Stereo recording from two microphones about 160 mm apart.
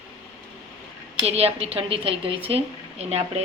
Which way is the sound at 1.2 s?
40° right (ahead or behind).